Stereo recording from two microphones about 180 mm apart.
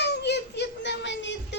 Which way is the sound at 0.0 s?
70° left (ahead or behind).